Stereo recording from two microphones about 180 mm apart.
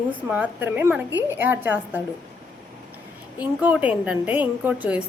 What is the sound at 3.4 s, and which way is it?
A woman's voice, 10° right (ahead or behind).